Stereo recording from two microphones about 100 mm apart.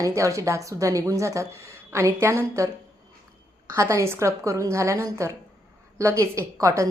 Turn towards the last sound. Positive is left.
turn(degrees=-30)  # may be behind; listen again after turning